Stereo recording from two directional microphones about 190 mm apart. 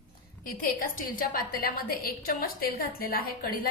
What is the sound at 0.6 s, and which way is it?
A woman's voice, 45° left (ahead or behind).